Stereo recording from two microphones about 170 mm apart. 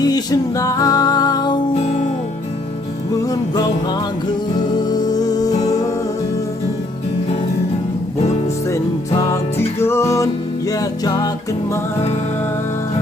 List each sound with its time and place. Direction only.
0.0 s music: 20° left (ahead or behind)
3.3 s music: 25° left (ahead or behind)
4.9 s music: 25° left (ahead or behind)
8.7 s music: 20° left (ahead or behind)